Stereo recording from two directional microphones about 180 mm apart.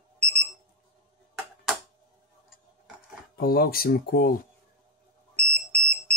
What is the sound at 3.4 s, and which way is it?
Speech, 55° left (ahead or behind).